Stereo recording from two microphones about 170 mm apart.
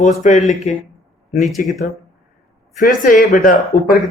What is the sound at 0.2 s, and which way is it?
Speech, 45° left (ahead or behind).